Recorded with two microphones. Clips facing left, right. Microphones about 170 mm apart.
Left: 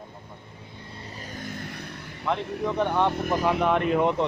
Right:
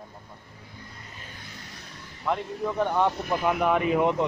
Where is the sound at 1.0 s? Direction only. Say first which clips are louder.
Left 7 dB; 35° left (ahead or behind); by 2.0 s 60° left (ahead or behind).